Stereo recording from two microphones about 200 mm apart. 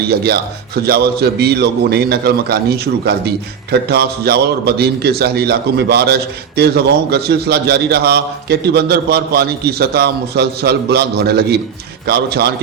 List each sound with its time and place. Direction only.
0.1 s a man's voice: 55° right (ahead or behind)